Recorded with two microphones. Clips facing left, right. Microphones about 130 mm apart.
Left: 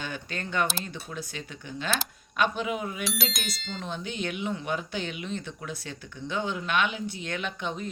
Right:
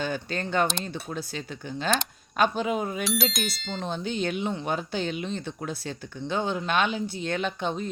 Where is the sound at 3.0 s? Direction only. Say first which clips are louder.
Right 5 dB; centre (ahead or behind).